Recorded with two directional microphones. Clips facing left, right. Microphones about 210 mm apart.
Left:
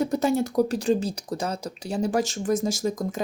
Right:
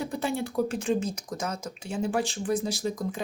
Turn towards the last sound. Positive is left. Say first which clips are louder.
# left 3 dB
turn(degrees=45)  # may be behind; listen again after turning